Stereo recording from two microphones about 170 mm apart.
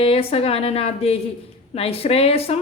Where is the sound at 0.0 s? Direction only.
35° left (ahead or behind).